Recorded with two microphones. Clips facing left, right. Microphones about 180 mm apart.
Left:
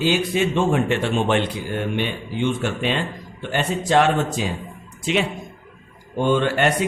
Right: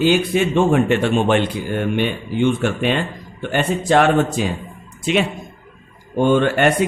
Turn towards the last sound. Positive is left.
turn(degrees=-55)  # may be behind; listen again after turning